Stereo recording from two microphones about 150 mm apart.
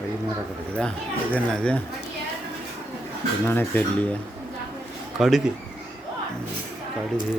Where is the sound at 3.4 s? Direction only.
10° left (ahead or behind).